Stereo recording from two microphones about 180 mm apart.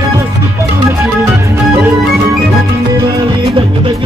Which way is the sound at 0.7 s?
15° right (ahead or behind).